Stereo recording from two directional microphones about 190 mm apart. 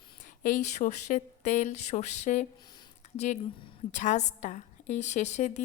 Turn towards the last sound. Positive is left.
turn(degrees=35)  # may be behind; listen again after turning